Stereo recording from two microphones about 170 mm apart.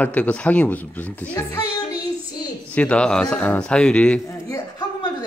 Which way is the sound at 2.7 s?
5° left (ahead or behind).